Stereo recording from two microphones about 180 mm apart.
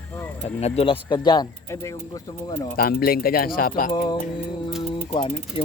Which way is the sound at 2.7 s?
55° left (ahead or behind).